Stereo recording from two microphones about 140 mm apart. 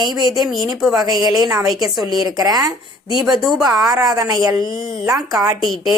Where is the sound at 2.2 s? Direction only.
30° right (ahead or behind).